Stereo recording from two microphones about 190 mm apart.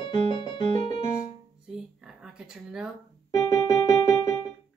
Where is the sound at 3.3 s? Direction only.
15° left (ahead or behind).